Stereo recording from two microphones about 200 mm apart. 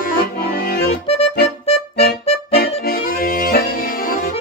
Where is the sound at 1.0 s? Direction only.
30° left (ahead or behind).